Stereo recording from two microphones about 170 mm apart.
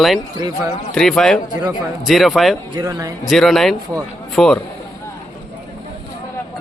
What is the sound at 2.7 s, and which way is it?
Speech, 20° right (ahead or behind).